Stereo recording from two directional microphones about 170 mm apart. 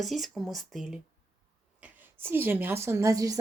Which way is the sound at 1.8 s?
10° right (ahead or behind).